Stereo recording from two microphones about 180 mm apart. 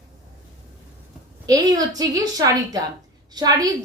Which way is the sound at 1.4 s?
20° right (ahead or behind).